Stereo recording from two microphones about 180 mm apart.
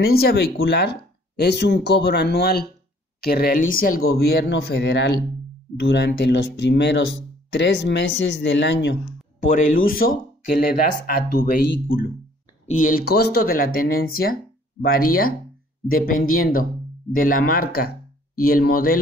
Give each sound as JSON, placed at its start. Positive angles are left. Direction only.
{"t": 0.0, "sound": "speech", "side_deg": 60}
{"t": 9.4, "sound": "speech", "side_deg": 50}